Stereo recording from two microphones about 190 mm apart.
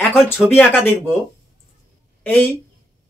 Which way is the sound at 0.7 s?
10° left (ahead or behind).